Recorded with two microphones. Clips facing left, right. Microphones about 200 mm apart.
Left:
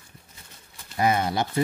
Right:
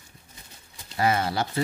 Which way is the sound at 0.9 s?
20° left (ahead or behind).